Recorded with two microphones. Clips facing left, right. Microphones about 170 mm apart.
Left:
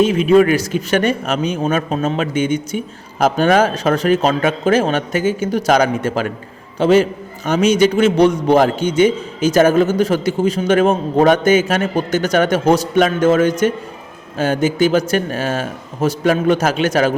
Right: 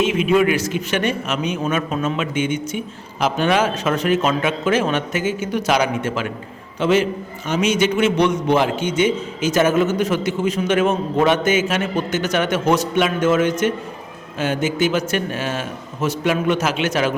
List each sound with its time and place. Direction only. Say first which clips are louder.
0.0 s a man's voice: left 5 dB; 35° left (ahead or behind)